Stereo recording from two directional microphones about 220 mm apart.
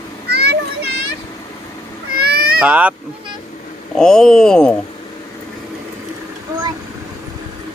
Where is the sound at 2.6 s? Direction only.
5° right (ahead or behind).